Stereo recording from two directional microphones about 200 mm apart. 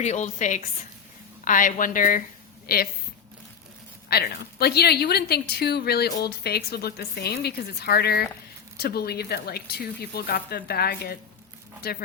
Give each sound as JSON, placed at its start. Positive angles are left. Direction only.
{"t": 0.0, "sound": "a woman's voice", "side_deg": 35}
{"t": 4.1, "sound": "a woman's voice", "side_deg": 50}